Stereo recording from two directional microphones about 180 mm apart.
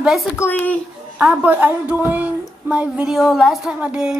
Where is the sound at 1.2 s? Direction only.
10° right (ahead or behind).